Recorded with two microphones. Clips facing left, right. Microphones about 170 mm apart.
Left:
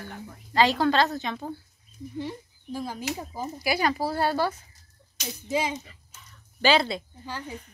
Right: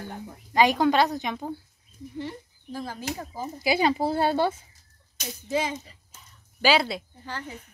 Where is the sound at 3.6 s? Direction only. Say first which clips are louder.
Right 3 dB; 20° right (ahead or behind).